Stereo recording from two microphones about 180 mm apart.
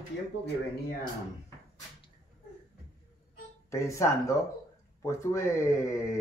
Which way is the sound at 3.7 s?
15° left (ahead or behind).